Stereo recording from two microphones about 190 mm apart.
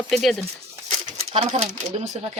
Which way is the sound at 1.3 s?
35° right (ahead or behind).